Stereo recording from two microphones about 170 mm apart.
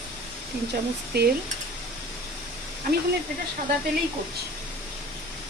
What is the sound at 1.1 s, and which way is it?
Speech, 70° right (ahead or behind).